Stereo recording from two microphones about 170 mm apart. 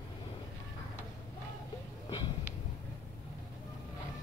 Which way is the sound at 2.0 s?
25° left (ahead or behind).